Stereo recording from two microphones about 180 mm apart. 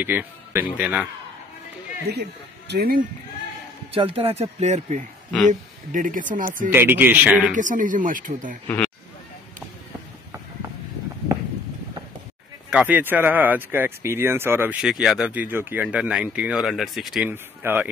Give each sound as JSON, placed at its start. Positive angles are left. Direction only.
{"t": 0.0, "sound": "speech", "side_deg": -10}
{"t": 2.1, "sound": "speech", "side_deg": -65}
{"t": 3.9, "sound": "speech", "side_deg": -30}
{"t": 6.7, "sound": "speech", "side_deg": -10}
{"t": 7.5, "sound": "speech", "side_deg": -45}
{"t": 8.6, "sound": "speech", "side_deg": 5}
{"t": 11.3, "sound": "a sound", "side_deg": -20}
{"t": 12.6, "sound": "speech", "side_deg": -5}
{"t": 17.3, "sound": "speech", "side_deg": -10}